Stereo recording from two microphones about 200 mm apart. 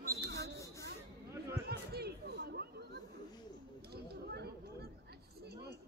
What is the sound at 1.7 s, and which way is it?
Chatter, 55° right (ahead or behind).